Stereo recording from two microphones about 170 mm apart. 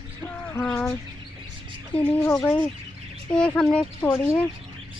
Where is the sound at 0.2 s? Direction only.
10° left (ahead or behind).